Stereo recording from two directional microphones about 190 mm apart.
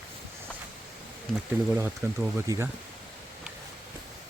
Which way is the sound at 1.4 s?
5° right (ahead or behind).